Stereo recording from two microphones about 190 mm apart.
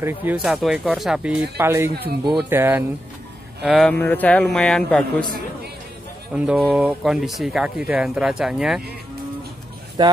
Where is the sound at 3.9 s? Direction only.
10° left (ahead or behind).